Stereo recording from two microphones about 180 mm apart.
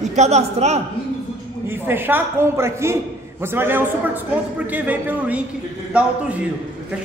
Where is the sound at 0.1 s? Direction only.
40° right (ahead or behind).